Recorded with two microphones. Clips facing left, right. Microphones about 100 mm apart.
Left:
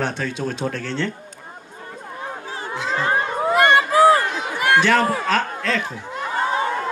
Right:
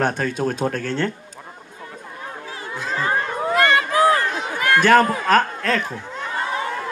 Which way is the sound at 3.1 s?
10° left (ahead or behind).